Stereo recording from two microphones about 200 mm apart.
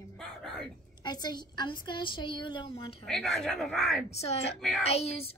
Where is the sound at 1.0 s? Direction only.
20° left (ahead or behind).